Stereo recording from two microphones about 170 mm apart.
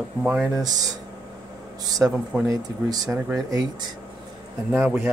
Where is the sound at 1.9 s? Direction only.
20° right (ahead or behind).